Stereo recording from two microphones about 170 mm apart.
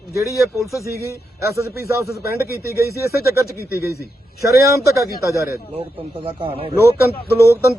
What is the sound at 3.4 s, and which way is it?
Speech, 15° right (ahead or behind).